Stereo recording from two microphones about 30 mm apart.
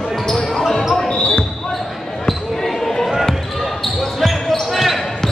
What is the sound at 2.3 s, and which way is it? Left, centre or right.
Basketball bounce, centre.